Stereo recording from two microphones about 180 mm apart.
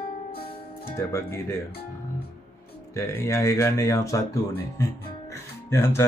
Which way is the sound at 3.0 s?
15° left (ahead or behind).